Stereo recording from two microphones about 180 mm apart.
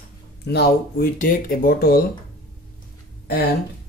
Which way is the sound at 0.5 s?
60° left (ahead or behind).